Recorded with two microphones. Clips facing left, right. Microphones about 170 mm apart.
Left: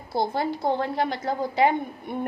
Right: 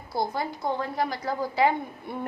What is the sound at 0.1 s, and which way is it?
A woman's voice, 25° left (ahead or behind).